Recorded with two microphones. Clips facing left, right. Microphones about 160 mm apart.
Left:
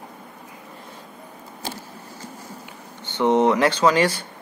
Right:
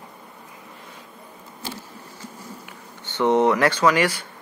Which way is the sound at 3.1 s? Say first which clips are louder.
Even; 20° left (ahead or behind).